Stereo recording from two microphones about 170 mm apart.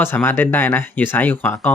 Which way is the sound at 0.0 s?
15° left (ahead or behind).